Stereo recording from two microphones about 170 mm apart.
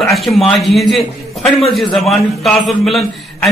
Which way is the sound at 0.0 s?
Centre (ahead or behind).